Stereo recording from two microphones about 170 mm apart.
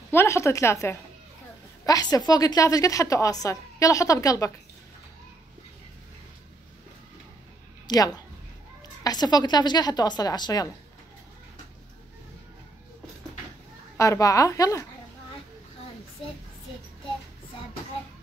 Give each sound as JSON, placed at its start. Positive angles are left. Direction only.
{"t": 0.1, "sound": "a woman's voice", "side_deg": 15}
{"t": 7.8, "sound": "a woman's voice", "side_deg": 25}
{"t": 13.9, "sound": "a woman's voice", "side_deg": 20}